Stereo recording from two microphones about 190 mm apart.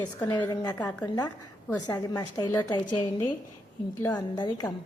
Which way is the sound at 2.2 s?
20° left (ahead or behind).